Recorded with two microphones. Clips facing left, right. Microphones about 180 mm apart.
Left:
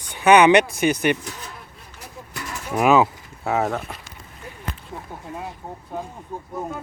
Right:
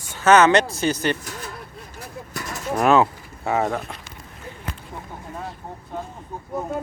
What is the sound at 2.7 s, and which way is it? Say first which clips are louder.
Speech: left 1 dB; 5° left (ahead or behind).